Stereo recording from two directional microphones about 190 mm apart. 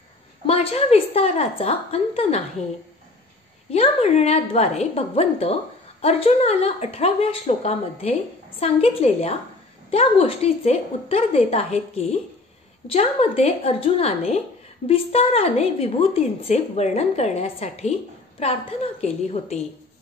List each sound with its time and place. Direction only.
0.5 s a woman's voice: 30° left (ahead or behind)
3.7 s a woman's voice: 35° left (ahead or behind)